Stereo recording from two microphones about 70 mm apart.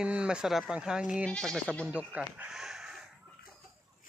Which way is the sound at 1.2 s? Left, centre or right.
Centre.